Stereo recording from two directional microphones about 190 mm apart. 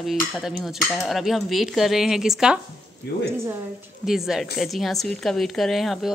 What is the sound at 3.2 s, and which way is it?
Speech, 15° right (ahead or behind).